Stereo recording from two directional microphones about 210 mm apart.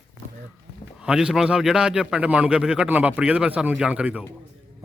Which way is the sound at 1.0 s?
5° right (ahead or behind).